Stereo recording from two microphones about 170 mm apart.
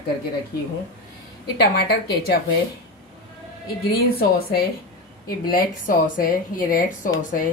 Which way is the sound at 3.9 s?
65° left (ahead or behind).